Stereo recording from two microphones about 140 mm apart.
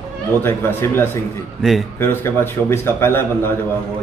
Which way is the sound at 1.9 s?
15° left (ahead or behind).